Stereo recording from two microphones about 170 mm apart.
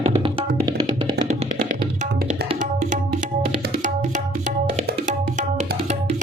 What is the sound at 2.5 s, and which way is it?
Tabla, 50° right (ahead or behind).